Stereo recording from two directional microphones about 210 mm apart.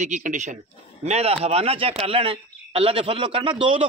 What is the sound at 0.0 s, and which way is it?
A man's voice, 35° right (ahead or behind).